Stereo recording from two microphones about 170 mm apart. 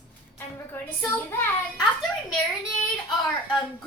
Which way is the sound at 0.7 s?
15° left (ahead or behind).